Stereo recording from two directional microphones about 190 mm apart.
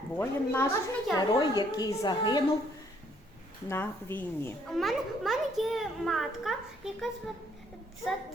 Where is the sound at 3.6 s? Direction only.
10° left (ahead or behind).